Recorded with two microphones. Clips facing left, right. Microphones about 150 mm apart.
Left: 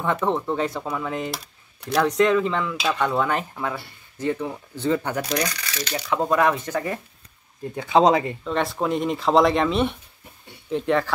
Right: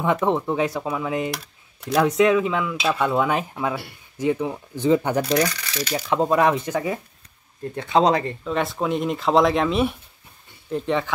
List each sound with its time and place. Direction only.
0.0 s speech: 15° right (ahead or behind)
1.9 s cutlery: 5° right (ahead or behind)
4.2 s speech: 10° right (ahead or behind)
5.7 s cutlery: 5° right (ahead or behind)
6.0 s speech: 20° right (ahead or behind)
6.7 s cutlery: 5° right (ahead or behind)